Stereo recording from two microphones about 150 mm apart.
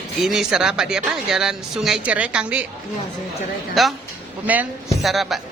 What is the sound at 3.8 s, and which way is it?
Speech, centre (ahead or behind).